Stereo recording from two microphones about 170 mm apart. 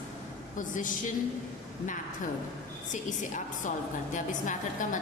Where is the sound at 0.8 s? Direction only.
50° left (ahead or behind).